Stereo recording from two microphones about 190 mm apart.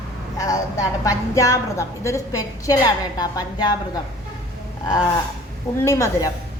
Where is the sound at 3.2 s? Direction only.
20° left (ahead or behind).